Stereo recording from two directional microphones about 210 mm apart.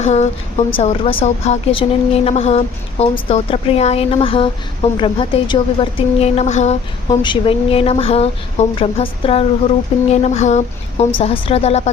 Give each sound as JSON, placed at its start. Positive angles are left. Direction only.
{"t": 0.0, "sound": "a woman's voice", "side_deg": 30}
{"t": 7.1, "sound": "a woman's voice", "side_deg": 20}